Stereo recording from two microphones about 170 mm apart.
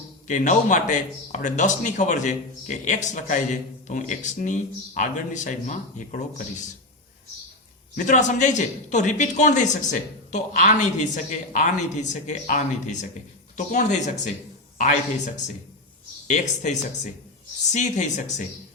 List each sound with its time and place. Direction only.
0.3 s speech: 50° left (ahead or behind)
7.9 s speech: 45° left (ahead or behind)
16.2 s speech: 45° left (ahead or behind)